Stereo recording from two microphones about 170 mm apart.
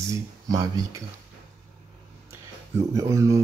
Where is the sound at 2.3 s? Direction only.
15° right (ahead or behind).